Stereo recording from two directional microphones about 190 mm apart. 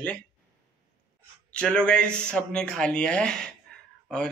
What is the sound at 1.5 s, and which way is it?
Speech, 5° left (ahead or behind).